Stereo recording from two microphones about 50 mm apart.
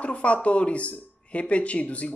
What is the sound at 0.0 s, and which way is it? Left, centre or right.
Speech, left.